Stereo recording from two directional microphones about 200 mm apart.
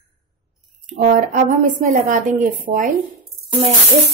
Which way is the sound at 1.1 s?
40° right (ahead or behind).